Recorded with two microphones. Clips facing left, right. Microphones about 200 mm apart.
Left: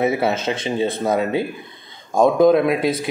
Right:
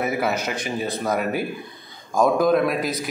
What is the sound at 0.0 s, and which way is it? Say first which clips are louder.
A man's voice: left 4 dB; 25° left (ahead or behind).